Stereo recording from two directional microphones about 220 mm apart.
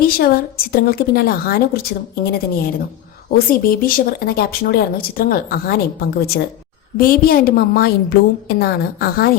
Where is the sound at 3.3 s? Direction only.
40° left (ahead or behind).